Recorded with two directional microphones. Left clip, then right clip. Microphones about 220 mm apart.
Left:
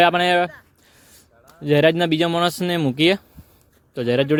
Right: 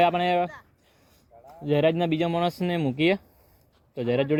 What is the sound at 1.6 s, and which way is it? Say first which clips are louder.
Speech: left 6 dB; 25° left (ahead or behind).